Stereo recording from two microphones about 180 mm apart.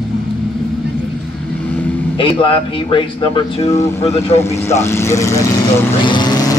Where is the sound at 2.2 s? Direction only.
30° left (ahead or behind).